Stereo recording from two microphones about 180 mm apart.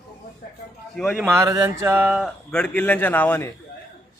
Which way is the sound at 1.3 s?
15° right (ahead or behind).